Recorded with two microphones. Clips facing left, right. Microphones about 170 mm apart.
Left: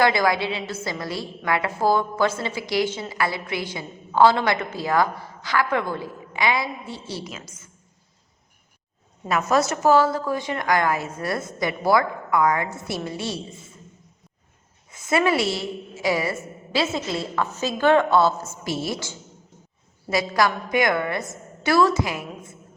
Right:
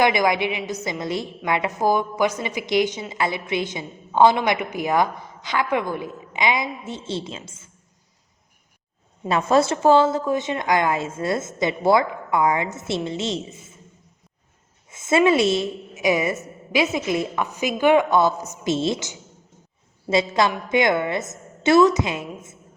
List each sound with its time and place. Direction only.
0.0 s a woman's voice: 20° right (ahead or behind)
9.2 s a woman's voice: 30° right (ahead or behind)
14.8 s a woman's voice: 25° right (ahead or behind)